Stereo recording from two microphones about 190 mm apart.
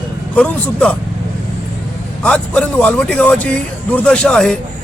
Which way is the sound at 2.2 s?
5° left (ahead or behind).